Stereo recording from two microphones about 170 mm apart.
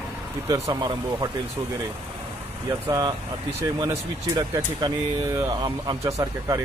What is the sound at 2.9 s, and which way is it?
Speech, 25° right (ahead or behind).